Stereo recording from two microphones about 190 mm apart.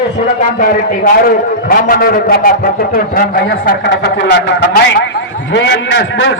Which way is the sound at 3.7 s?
60° left (ahead or behind).